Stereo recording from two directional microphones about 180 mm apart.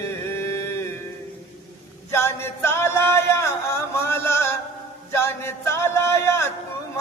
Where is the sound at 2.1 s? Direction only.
15° left (ahead or behind).